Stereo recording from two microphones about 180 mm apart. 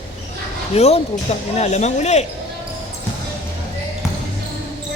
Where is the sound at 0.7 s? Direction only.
35° left (ahead or behind).